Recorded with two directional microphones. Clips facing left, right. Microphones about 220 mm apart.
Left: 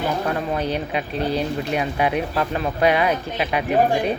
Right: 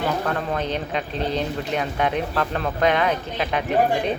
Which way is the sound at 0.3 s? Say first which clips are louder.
Left 2 dB; 10° left (ahead or behind).